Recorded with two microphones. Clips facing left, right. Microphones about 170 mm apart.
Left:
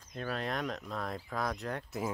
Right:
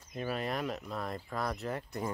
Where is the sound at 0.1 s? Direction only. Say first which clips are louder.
Right 1 dB; 5° right (ahead or behind).